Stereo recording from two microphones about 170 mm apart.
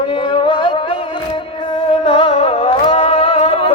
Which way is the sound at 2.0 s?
30° left (ahead or behind).